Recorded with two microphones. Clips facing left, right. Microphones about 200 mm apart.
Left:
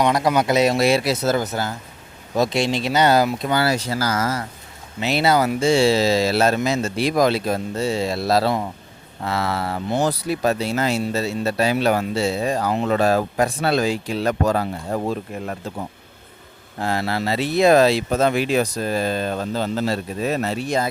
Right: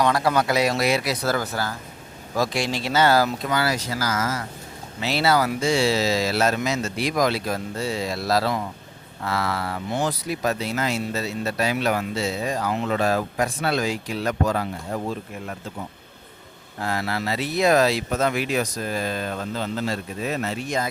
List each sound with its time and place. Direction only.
0.0 s speech: 20° left (ahead or behind)
4.9 s speech: 20° left (ahead or behind); by 15.5 s 45° left (ahead or behind)
16.8 s speech: 30° left (ahead or behind)